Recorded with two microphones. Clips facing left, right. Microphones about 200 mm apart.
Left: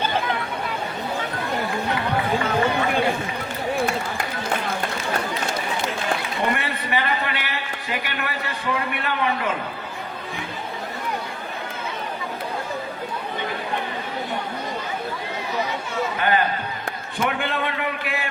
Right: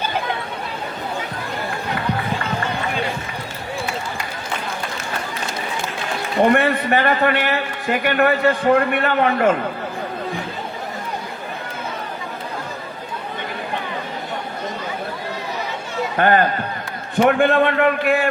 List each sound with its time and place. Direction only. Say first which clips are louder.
6.4 s a man's voice: right 14 dB; 50° right (ahead or behind)
16.1 s a man's voice: right 7 dB; 50° right (ahead or behind)